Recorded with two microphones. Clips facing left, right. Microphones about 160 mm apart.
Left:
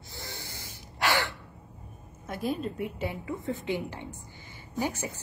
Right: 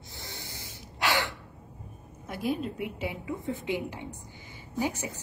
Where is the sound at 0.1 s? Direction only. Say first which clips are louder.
Left 2 dB; 20° right (ahead or behind).